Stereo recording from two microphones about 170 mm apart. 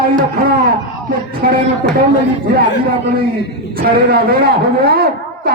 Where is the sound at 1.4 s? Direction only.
65° right (ahead or behind).